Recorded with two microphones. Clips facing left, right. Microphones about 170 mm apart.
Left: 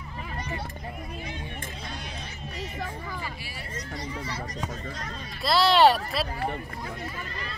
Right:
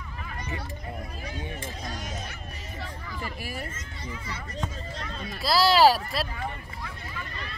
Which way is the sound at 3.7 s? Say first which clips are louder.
Left 5 dB; 35° left (ahead or behind).